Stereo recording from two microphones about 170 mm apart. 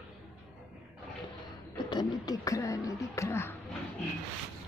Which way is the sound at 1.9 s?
25° left (ahead or behind).